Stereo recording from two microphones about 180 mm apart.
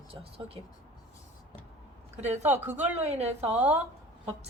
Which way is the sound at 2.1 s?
40° right (ahead or behind).